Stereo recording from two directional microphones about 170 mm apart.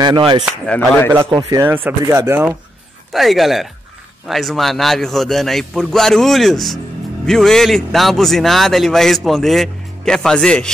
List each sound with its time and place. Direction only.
0.0 s speech: 25° right (ahead or behind)
0.7 s speech: 10° left (ahead or behind)
1.5 s speech: 15° right (ahead or behind)
3.1 s a man's voice: centre (ahead or behind)